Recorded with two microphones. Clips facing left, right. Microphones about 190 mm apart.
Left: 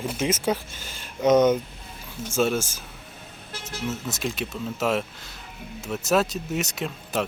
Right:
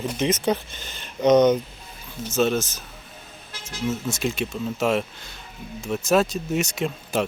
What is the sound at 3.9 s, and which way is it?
Speech, centre (ahead or behind).